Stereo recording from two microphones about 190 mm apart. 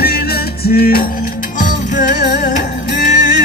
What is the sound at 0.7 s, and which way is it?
Music, 50° left (ahead or behind).